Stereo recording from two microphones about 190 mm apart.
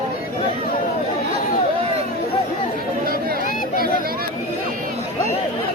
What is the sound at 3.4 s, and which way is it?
Chatter, 45° left (ahead or behind).